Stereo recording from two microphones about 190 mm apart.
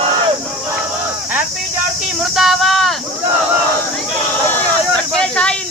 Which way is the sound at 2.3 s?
Centre (ahead or behind).